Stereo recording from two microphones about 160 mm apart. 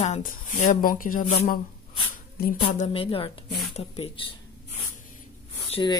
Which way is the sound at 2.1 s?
60° left (ahead or behind).